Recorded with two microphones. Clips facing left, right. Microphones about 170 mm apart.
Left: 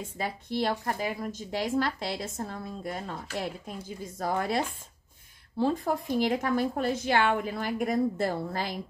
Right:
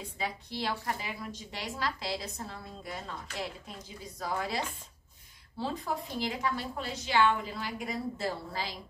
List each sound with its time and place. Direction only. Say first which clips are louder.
0.2 s a woman's voice: left 6 dB; 50° left (ahead or behind)